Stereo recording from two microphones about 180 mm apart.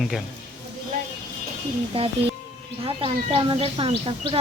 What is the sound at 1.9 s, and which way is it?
A woman's voice, 30° right (ahead or behind).